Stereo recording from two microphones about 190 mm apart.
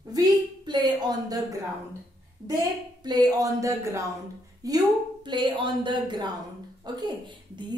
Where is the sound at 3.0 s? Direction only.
20° right (ahead or behind).